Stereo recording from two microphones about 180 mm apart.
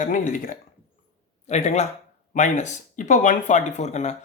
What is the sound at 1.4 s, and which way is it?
Speech, 40° left (ahead or behind).